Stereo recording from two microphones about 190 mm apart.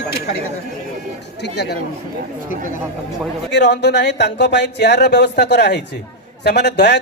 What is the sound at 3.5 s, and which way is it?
Speech, 65° left (ahead or behind).